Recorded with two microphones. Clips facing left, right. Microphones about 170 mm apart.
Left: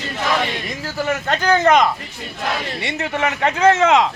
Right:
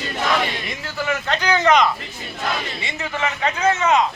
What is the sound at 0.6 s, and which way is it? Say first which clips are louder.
A man's voice: left 3 dB; 45° left (ahead or behind).